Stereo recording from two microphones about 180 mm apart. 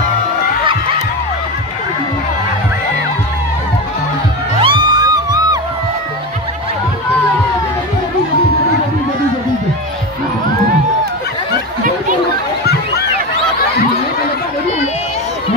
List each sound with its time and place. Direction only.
4.6 s music: 25° right (ahead or behind)